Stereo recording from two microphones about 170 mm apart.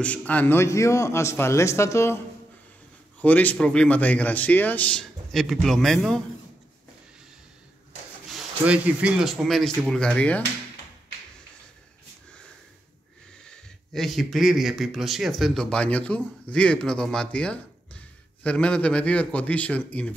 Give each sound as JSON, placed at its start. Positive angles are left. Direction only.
{"t": 0.0, "sound": "speech", "side_deg": 10}
{"t": 3.2, "sound": "speech", "side_deg": 10}
{"t": 8.3, "sound": "speech", "side_deg": -5}
{"t": 13.5, "sound": "speech", "side_deg": 0}